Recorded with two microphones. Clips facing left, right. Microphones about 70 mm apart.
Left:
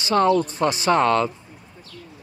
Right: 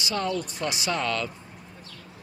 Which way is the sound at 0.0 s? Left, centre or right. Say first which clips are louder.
Left 10 dB; left.